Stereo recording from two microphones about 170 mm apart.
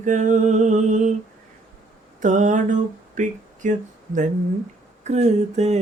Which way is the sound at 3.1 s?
50° right (ahead or behind).